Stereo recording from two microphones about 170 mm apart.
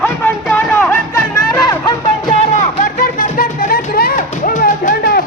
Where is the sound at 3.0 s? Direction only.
55° left (ahead or behind).